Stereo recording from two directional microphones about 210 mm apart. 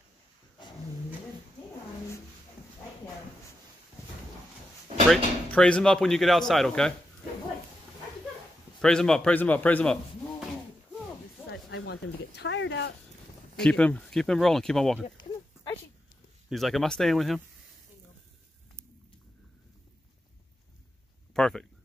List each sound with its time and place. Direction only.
5.1 s speech: 5° left (ahead or behind)
8.8 s a man's voice: 5° left (ahead or behind)
11.5 s speech: 60° left (ahead or behind)
13.6 s speech: 5° left (ahead or behind)
16.4 s speech: centre (ahead or behind)
21.3 s a sound: 5° left (ahead or behind)